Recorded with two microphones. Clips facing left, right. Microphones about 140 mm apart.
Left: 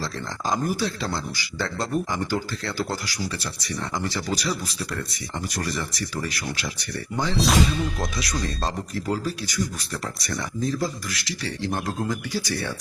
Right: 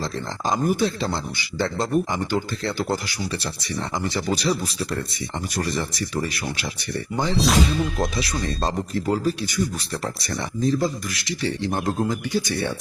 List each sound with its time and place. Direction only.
0.5 s a man's voice: 20° right (ahead or behind)
5.5 s a man's voice: 25° right (ahead or behind)
7.3 s speech: centre (ahead or behind)
8.2 s a man's voice: 25° right (ahead or behind)